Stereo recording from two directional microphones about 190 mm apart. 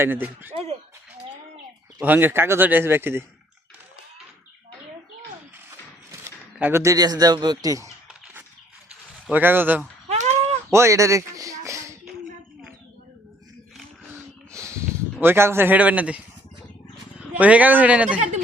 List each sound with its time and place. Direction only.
0.0 s speech: 10° right (ahead or behind)
0.5 s speech: 30° right (ahead or behind)
2.0 s speech: 10° right (ahead or behind)
6.1 s speech: 10° right (ahead or behind)
9.3 s speech: 10° right (ahead or behind)
10.1 s a sound: 35° right (ahead or behind)
10.7 s speech: 15° right (ahead or behind)
11.6 s a sound: 15° right (ahead or behind)
13.7 s a sound: 10° right (ahead or behind)
17.2 s speech: 5° right (ahead or behind)